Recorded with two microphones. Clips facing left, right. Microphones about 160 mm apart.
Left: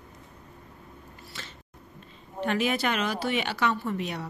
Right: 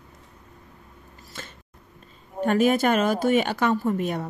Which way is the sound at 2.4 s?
45° right (ahead or behind).